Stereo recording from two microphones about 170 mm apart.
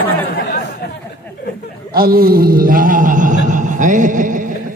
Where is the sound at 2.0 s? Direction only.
60° right (ahead or behind).